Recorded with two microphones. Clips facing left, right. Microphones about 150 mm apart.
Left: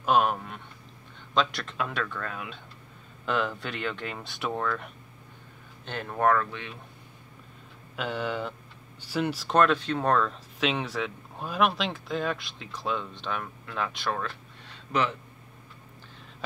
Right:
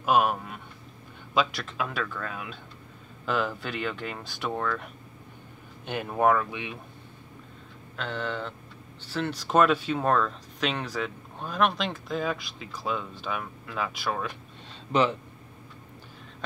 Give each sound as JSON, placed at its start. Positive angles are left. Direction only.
{"t": 0.0, "sound": "speech", "side_deg": -5}
{"t": 5.9, "sound": "speech", "side_deg": -10}
{"t": 7.9, "sound": "speech", "side_deg": 10}
{"t": 14.9, "sound": "speech", "side_deg": -20}